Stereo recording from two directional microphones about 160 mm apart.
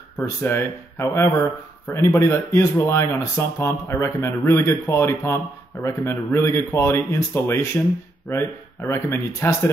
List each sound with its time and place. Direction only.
0.2 s speech: 15° left (ahead or behind)